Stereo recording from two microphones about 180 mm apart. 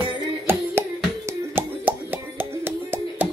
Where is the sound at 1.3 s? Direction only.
10° right (ahead or behind).